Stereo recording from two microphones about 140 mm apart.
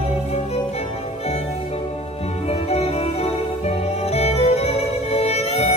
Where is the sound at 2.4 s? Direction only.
45° left (ahead or behind).